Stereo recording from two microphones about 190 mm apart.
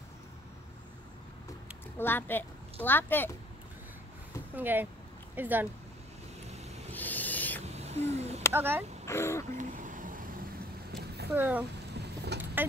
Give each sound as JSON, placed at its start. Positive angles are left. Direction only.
{"t": 2.0, "sound": "a woman's voice", "side_deg": 10}
{"t": 4.6, "sound": "speech", "side_deg": -10}
{"t": 6.5, "sound": "a sound", "side_deg": -35}
{"t": 6.9, "sound": "owl", "side_deg": 10}
{"t": 7.6, "sound": "owl", "side_deg": -35}
{"t": 8.5, "sound": "speech", "side_deg": -10}
{"t": 9.0, "sound": "speech", "side_deg": 15}
{"t": 9.6, "sound": "vehicle", "side_deg": -40}
{"t": 10.9, "sound": "a sound", "side_deg": -60}
{"t": 11.3, "sound": "speech", "side_deg": -10}
{"t": 12.6, "sound": "vehicle", "side_deg": -10}